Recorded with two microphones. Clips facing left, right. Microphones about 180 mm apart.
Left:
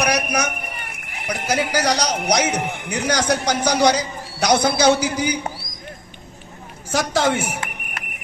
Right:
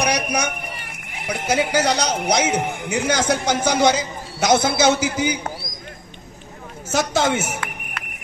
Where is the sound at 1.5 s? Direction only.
25° right (ahead or behind).